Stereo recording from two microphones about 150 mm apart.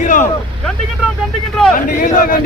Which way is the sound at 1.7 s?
65° left (ahead or behind).